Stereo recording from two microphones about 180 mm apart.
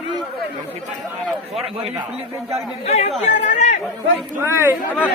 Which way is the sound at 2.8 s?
35° left (ahead or behind).